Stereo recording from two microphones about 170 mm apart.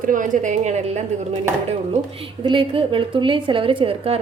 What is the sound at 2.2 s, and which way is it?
A woman's voice, 30° right (ahead or behind).